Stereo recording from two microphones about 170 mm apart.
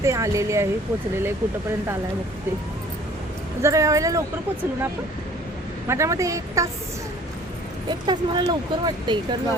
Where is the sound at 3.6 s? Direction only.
15° right (ahead or behind).